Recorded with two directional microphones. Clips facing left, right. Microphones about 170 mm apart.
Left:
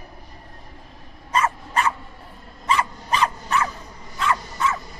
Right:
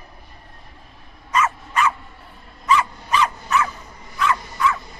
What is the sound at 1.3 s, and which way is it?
Dog, 35° left (ahead or behind).